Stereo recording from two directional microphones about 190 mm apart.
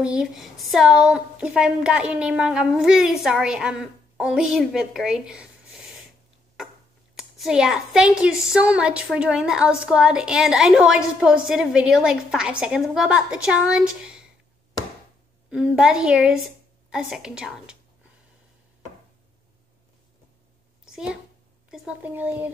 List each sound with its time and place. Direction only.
0.0 s a woman's voice: 5° right (ahead or behind)
7.2 s a woman's voice: centre (ahead or behind)
15.5 s a woman's voice: 5° right (ahead or behind)
20.8 s a sound: 5° right (ahead or behind)
21.6 s speech: 5° right (ahead or behind)